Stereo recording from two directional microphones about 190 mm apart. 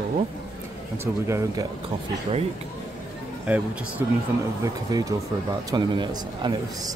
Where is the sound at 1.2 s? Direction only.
15° right (ahead or behind).